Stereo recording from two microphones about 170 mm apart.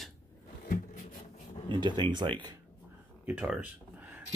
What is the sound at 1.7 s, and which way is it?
Speech, 25° right (ahead or behind).